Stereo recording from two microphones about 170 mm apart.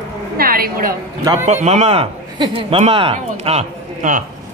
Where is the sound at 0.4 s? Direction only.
60° right (ahead or behind).